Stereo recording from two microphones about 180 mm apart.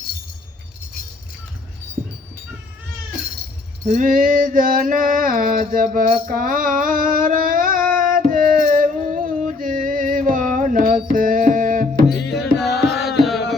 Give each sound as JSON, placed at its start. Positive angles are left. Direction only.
{"t": 3.8, "sound": "a sound", "side_deg": -45}
{"t": 11.1, "sound": "music", "side_deg": -50}
{"t": 12.6, "sound": "music", "side_deg": 65}
{"t": 13.0, "sound": "music", "side_deg": 0}